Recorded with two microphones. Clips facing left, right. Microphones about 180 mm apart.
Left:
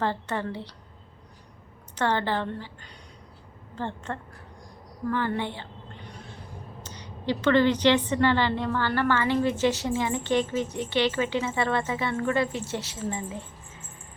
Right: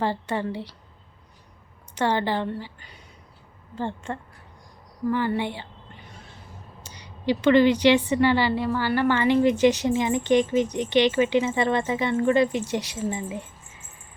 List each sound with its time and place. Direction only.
0.0 s a woman's voice: 10° right (ahead or behind)
2.0 s a woman's voice: 10° right (ahead or behind)
6.8 s a woman's voice: 10° right (ahead or behind)